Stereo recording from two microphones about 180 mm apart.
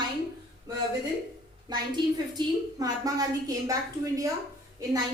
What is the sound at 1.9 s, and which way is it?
A woman's voice, 20° right (ahead or behind).